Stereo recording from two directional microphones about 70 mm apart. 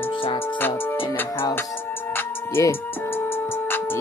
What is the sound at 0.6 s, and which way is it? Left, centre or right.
Music, left.